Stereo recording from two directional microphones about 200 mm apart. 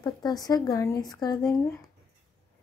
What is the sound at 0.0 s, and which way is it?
Speech, 20° left (ahead or behind).